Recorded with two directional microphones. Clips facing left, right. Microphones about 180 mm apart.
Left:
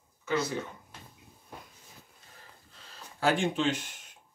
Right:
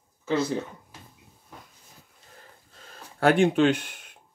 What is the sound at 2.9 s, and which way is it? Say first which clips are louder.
Speech: right 6 dB; 60° right (ahead or behind).